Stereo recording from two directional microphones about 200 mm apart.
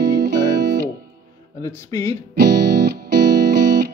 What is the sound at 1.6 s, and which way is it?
Speech, 15° left (ahead or behind).